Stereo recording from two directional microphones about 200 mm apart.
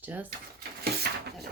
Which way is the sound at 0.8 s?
55° right (ahead or behind).